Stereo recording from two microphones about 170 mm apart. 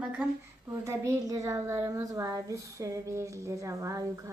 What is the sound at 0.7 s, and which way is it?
A woman's voice, 15° right (ahead or behind).